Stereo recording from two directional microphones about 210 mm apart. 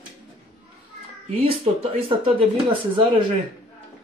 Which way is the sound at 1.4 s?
25° right (ahead or behind).